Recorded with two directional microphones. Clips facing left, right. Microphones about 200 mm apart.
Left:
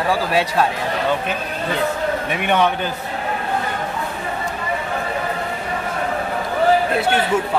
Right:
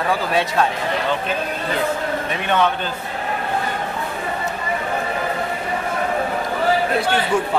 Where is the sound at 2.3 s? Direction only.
15° left (ahead or behind).